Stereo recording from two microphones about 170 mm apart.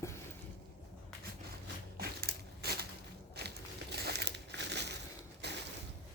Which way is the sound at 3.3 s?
75° right (ahead or behind).